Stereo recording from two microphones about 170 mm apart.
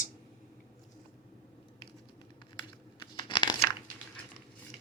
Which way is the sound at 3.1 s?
25° left (ahead or behind).